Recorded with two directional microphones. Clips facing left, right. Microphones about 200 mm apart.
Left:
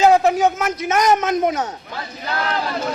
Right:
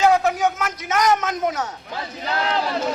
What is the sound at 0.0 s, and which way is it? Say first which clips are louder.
A man's voice: left 4 dB; 25° left (ahead or behind).